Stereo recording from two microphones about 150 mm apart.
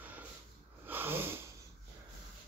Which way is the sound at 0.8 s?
15° right (ahead or behind).